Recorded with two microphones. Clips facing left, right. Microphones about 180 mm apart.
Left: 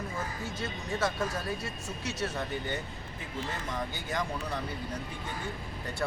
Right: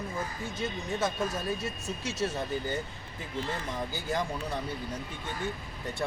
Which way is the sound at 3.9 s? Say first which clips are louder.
Right 2 dB; 30° right (ahead or behind).